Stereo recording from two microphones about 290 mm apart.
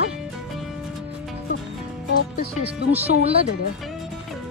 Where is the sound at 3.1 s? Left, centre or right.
Right.